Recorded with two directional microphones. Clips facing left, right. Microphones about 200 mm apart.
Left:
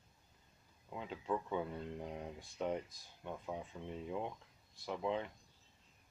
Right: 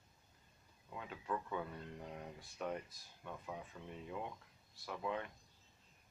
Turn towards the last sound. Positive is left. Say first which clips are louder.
# left 4 dB
turn(degrees=25)  # may be behind; listen again after turning